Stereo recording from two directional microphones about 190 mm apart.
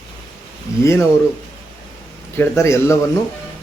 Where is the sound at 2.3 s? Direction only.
15° left (ahead or behind).